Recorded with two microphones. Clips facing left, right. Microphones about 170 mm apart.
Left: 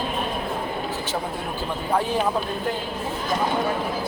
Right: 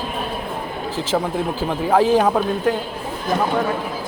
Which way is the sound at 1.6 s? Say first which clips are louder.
Right 7 dB; 90° right.